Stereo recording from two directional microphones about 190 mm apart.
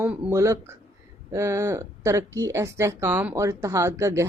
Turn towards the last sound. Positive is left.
turn(degrees=-15)  # may be behind; listen again after turning